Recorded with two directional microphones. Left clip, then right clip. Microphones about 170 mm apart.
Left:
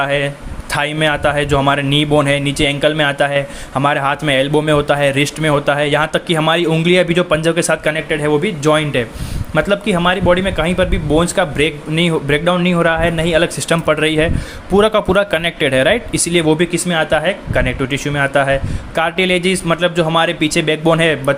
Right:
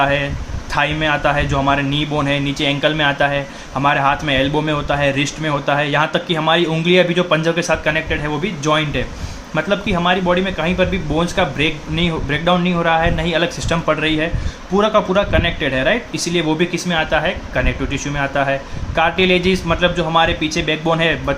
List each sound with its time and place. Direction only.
0.0 s a man's voice: 45° left (ahead or behind)